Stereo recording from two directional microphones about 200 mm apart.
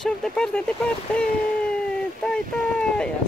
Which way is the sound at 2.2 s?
5° left (ahead or behind).